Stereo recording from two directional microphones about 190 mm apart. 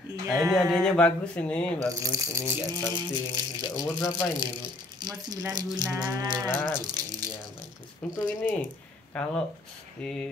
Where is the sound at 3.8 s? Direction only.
20° left (ahead or behind).